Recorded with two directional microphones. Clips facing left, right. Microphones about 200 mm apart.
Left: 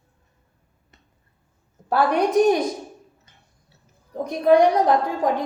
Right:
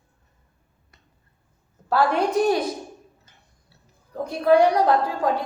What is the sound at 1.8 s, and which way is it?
Speech, 20° left (ahead or behind).